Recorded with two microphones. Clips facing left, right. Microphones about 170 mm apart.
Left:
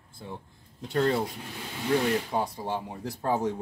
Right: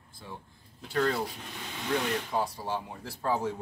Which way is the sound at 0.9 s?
20° left (ahead or behind).